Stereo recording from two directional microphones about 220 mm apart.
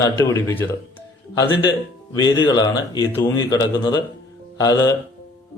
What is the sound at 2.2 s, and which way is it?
A man's voice, 20° left (ahead or behind).